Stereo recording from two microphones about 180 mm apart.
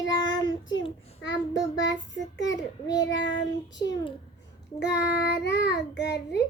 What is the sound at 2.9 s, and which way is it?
Child singing, 85° left.